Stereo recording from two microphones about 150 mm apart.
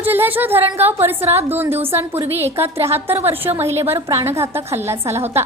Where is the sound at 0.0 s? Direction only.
15° right (ahead or behind).